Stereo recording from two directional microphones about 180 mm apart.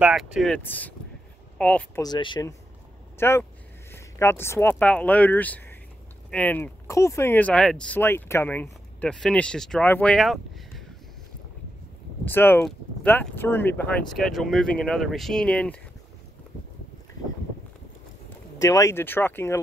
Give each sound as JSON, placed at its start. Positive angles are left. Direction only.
{"t": 0.0, "sound": "speech", "side_deg": 0}
{"t": 2.0, "sound": "speech", "side_deg": 25}
{"t": 3.2, "sound": "speech", "side_deg": 15}
{"t": 12.3, "sound": "speech", "side_deg": 10}
{"t": 18.6, "sound": "speech", "side_deg": 20}